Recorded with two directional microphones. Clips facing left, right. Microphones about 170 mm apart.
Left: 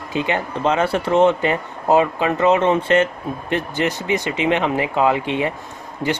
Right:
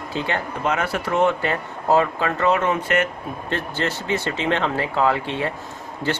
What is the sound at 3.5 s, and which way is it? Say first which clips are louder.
Speech: left 4 dB; 15° left (ahead or behind).